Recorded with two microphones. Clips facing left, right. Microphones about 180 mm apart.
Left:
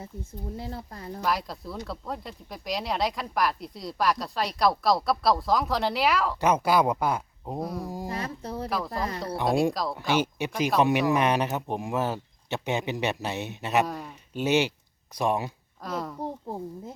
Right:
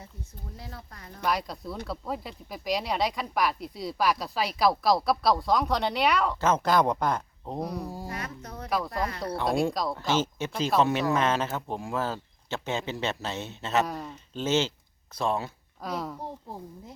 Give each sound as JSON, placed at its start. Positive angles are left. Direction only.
{"t": 0.5, "sound": "speech", "side_deg": 30}
{"t": 1.2, "sound": "speech", "side_deg": 0}
{"t": 7.9, "sound": "speech", "side_deg": 15}
{"t": 8.1, "sound": "speech", "side_deg": 30}
{"t": 15.8, "sound": "speech", "side_deg": 0}